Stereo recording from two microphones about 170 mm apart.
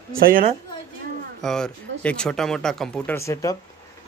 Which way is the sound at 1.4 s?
5° left (ahead or behind).